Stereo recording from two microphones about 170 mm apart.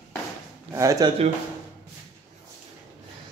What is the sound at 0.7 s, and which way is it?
Speech, 20° right (ahead or behind).